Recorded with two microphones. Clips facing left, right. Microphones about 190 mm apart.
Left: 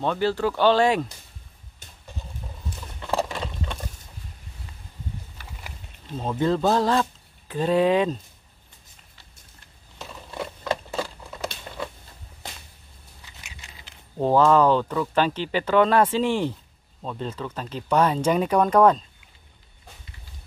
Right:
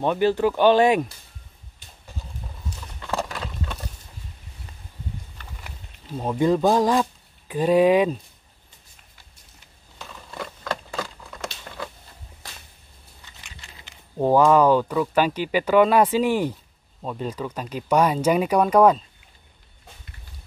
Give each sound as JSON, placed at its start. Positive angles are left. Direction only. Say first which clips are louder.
{"t": 0.0, "sound": "speech", "louder": "right 3 dB", "side_deg": -15}
{"t": 3.2, "sound": "a sound", "louder": "left 2 dB", "side_deg": 0}
{"t": 6.1, "sound": "speech", "louder": "right 3 dB", "side_deg": -10}
{"t": 9.9, "sound": "a sound", "louder": "left 2 dB", "side_deg": 5}
{"t": 13.4, "sound": "biting", "louder": "even", "side_deg": 0}
{"t": 14.1, "sound": "speech", "louder": "right 1 dB", "side_deg": -10}